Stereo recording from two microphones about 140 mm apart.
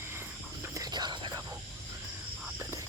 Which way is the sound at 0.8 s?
30° right (ahead or behind).